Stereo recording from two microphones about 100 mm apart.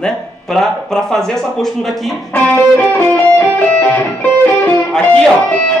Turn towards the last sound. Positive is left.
turn(degrees=15)  # may be behind; listen again after turning